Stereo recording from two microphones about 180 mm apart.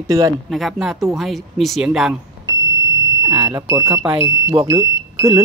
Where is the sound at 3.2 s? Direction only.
20° right (ahead or behind).